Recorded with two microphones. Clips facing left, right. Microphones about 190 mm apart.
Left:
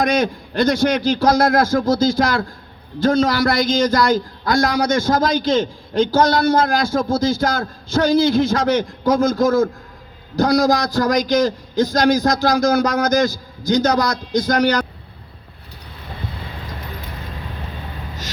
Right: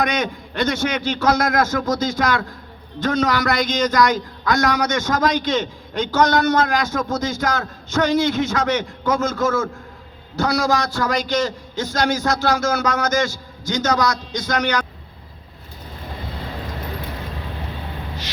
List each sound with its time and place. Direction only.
0.0 s a man's voice: 35° left (ahead or behind)